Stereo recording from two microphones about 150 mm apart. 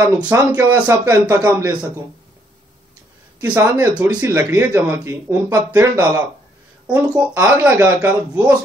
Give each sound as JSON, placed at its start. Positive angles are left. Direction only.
{"t": 0.3, "sound": "a man's voice", "side_deg": -15}
{"t": 3.3, "sound": "speech", "side_deg": -15}